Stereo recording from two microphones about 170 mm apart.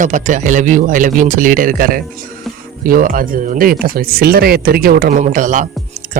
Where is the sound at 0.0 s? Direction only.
45° right (ahead or behind).